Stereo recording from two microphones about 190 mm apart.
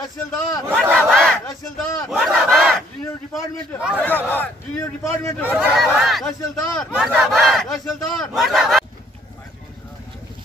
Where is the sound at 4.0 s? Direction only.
10° left (ahead or behind).